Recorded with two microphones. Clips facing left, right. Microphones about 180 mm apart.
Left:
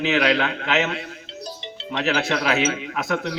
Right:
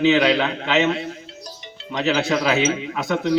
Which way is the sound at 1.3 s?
25° left (ahead or behind).